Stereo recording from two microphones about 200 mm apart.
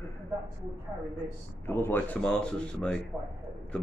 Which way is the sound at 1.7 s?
10° left (ahead or behind).